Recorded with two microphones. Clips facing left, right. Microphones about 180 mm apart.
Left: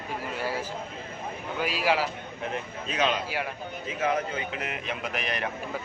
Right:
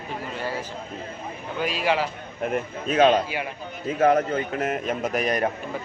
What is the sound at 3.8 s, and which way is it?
A man's voice, 50° right (ahead or behind).